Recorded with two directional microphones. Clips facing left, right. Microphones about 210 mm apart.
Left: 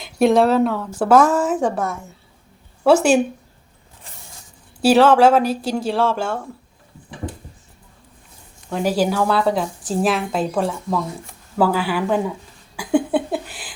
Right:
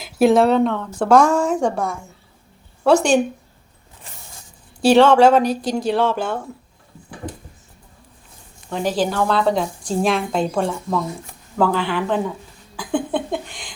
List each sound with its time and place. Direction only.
0.0 s speech: centre (ahead or behind)
4.8 s speech: 5° left (ahead or behind)
8.7 s speech: 10° left (ahead or behind)
12.7 s a sound: 10° left (ahead or behind)